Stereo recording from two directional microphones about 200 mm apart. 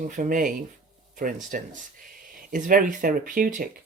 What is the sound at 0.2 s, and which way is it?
Speech, 40° right (ahead or behind).